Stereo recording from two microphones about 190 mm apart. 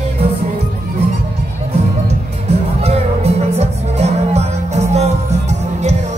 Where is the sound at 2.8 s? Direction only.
35° right (ahead or behind).